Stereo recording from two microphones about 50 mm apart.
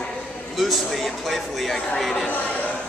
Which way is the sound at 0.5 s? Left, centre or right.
Centre.